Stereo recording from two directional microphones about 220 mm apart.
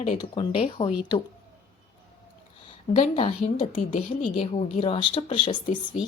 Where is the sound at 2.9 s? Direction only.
25° left (ahead or behind).